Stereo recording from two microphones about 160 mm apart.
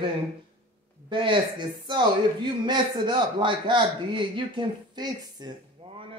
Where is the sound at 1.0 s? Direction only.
30° right (ahead or behind).